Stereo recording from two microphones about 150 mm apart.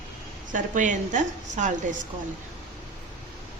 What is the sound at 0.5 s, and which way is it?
A woman's voice, 60° right (ahead or behind).